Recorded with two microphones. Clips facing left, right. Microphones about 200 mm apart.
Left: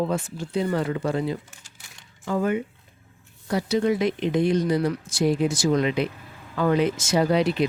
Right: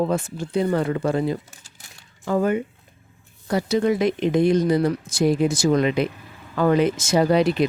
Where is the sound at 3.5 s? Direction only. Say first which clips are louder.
Right 2 dB; 50° right (ahead or behind).